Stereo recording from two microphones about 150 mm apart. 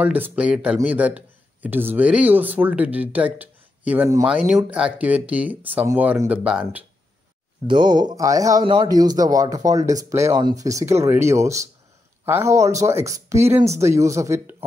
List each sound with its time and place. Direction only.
0.0 s speech: 10° right (ahead or behind)
7.6 s speech: 30° right (ahead or behind); by 14.6 s 15° right (ahead or behind)